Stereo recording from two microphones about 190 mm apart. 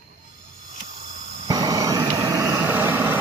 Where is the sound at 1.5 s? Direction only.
20° right (ahead or behind).